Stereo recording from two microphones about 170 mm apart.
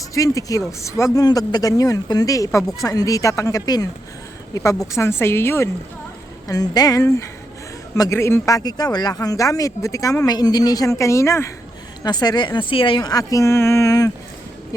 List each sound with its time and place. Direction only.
0.1 s a woman's voice: 20° left (ahead or behind)